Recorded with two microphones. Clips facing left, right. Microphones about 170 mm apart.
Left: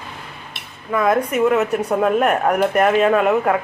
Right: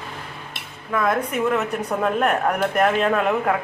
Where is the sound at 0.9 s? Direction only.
5° left (ahead or behind).